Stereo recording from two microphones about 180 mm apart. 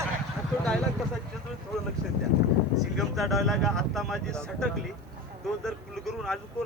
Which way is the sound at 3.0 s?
Centre (ahead or behind).